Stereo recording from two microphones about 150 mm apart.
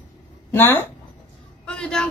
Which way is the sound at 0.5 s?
15° left (ahead or behind).